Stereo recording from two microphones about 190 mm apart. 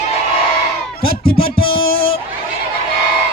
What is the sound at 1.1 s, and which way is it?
Music, 55° left (ahead or behind).